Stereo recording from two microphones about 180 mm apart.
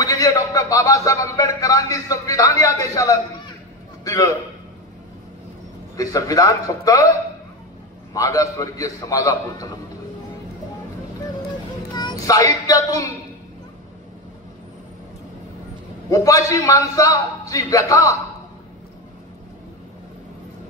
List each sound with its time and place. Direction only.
0.0 s a sound: 20° left (ahead or behind)
5.9 s a man's voice: 20° left (ahead or behind)
8.1 s a man's voice: 20° left (ahead or behind)
11.9 s speech: 25° left (ahead or behind)
16.1 s a man's voice: 20° left (ahead or behind)